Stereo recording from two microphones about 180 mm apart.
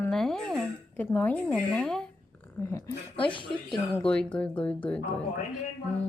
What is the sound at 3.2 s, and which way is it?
Speech, 30° left (ahead or behind).